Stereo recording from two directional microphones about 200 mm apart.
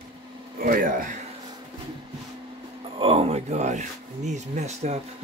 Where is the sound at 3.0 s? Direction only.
30° right (ahead or behind).